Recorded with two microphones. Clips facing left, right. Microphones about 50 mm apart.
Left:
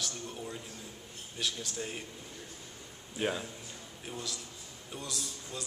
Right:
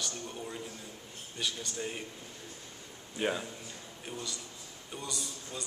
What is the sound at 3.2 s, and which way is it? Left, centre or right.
A man's voice, centre.